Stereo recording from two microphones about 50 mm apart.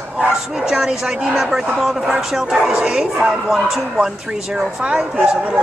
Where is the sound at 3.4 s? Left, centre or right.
Centre.